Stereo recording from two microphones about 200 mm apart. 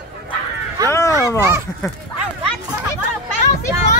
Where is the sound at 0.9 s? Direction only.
15° left (ahead or behind).